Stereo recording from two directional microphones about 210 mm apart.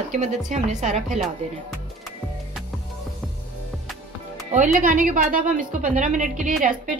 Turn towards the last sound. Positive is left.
turn(degrees=-40)  # may be behind; listen again after turning